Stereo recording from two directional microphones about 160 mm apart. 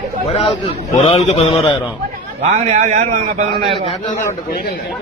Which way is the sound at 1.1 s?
40° left (ahead or behind).